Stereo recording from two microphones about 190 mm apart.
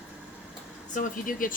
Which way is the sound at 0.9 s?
45° left (ahead or behind).